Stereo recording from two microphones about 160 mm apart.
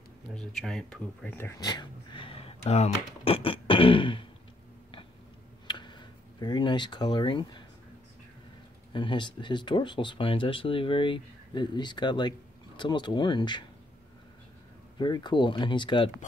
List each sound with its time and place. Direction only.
0.3 s speech: 5° left (ahead or behind)
1.4 s speech: 20° left (ahead or behind); by 2.9 s 40° left (ahead or behind)
3.3 s beatboxing: 35° left (ahead or behind)
5.7 s speech: 30° left (ahead or behind)
8.9 s speech: 30° left (ahead or behind)
15.0 s speech: 25° left (ahead or behind)